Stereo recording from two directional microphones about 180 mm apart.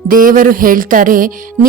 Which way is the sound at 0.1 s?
50° right (ahead or behind).